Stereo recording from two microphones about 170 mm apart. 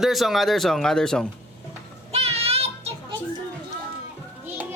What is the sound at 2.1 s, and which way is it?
Child singing, 35° right (ahead or behind).